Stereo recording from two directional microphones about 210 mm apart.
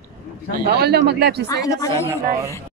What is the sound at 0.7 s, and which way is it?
Speech, 50° right (ahead or behind).